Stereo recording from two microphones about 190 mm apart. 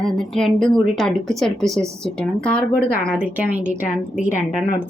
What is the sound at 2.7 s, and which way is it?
Speech, 50° left (ahead or behind).